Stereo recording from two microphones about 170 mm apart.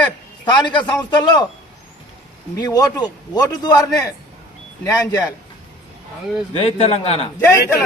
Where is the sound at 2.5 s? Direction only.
20° left (ahead or behind).